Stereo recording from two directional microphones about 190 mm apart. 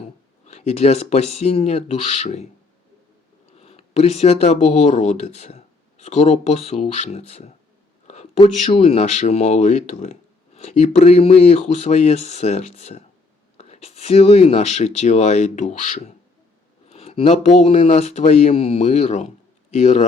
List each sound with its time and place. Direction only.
0.4 s speech: 35° left (ahead or behind)
3.6 s speech: 30° left (ahead or behind)